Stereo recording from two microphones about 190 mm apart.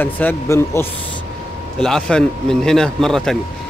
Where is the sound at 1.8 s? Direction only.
5° left (ahead or behind).